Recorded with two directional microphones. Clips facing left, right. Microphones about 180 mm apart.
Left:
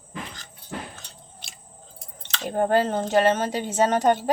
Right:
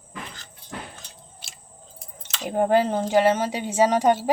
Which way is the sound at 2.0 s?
10° right (ahead or behind).